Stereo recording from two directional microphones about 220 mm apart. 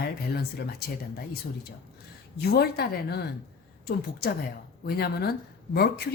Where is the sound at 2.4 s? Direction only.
45° left (ahead or behind).